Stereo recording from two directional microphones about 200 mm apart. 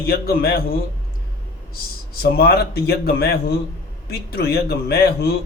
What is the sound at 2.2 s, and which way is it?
A man's voice, 50° left (ahead or behind).